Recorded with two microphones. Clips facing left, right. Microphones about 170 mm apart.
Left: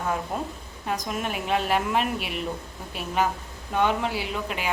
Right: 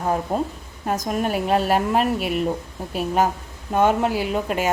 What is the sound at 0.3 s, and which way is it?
A woman's voice, 35° right (ahead or behind).